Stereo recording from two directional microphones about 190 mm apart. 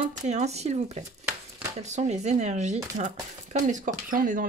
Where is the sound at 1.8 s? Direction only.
35° right (ahead or behind).